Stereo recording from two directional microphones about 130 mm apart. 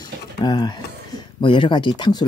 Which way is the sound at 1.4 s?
40° left (ahead or behind).